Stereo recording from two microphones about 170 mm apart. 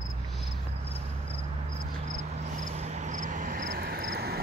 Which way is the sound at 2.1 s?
45° right (ahead or behind).